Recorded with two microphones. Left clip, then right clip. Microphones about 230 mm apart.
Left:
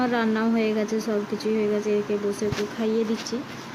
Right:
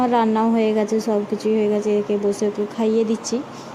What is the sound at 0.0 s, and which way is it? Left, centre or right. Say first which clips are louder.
A woman's voice: right 6 dB; centre.